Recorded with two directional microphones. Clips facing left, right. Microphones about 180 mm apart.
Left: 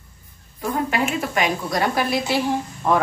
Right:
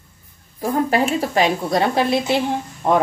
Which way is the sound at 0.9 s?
35° right (ahead or behind).